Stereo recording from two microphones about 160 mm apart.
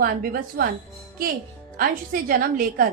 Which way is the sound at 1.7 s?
65° right (ahead or behind).